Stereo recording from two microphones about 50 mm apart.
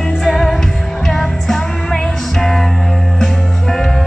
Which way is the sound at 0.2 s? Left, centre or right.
Centre.